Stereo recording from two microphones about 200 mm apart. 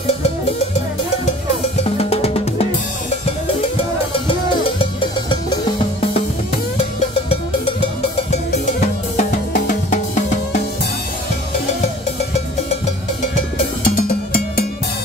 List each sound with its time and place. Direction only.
1.9 s drum: 30° left (ahead or behind)
4.3 s music: 25° left (ahead or behind)
8.3 s music: 35° left (ahead or behind)
13.8 s cowbell: 40° left (ahead or behind)